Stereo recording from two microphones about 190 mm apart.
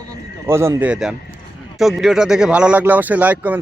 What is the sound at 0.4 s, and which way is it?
Speech, 15° right (ahead or behind).